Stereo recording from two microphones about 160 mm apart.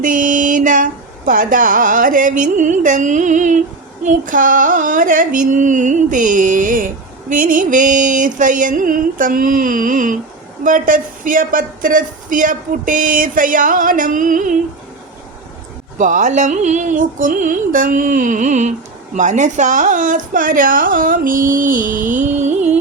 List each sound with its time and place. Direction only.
0.0 s speech: 55° right (ahead or behind)
4.0 s female singing: 55° right (ahead or behind)
16.0 s speech: 55° right (ahead or behind)
19.1 s female singing: 50° right (ahead or behind)
22.1 s music: 50° right (ahead or behind)